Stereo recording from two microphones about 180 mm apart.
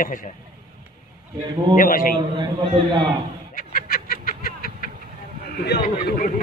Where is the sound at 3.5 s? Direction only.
50° left (ahead or behind).